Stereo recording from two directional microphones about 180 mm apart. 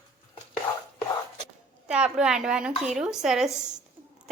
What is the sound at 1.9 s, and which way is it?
A woman's voice, 5° right (ahead or behind).